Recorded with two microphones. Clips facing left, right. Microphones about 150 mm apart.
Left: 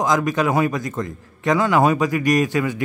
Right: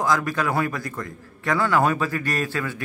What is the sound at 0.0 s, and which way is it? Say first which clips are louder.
A man's voice: left 4 dB; 20° left (ahead or behind).